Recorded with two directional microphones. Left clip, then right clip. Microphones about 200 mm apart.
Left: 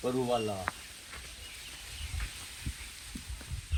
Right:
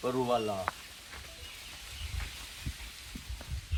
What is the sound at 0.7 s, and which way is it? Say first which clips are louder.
Speech: right 1 dB; 20° right (ahead or behind).